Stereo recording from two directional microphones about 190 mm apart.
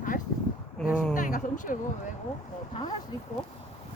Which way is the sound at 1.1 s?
45° left (ahead or behind).